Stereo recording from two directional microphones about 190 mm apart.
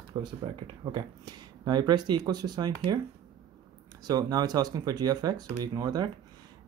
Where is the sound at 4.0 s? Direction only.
20° right (ahead or behind).